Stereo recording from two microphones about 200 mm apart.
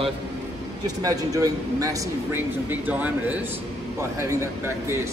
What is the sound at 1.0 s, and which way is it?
A man's voice, 15° right (ahead or behind).